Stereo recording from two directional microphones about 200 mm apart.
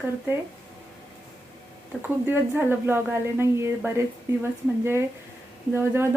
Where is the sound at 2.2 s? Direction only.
10° right (ahead or behind).